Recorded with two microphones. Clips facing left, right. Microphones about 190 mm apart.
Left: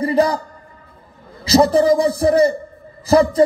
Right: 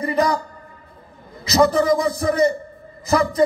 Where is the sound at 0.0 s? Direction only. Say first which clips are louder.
Left 4 dB; 30° left (ahead or behind).